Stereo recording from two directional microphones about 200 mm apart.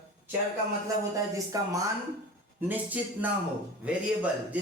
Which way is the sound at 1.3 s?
15° right (ahead or behind).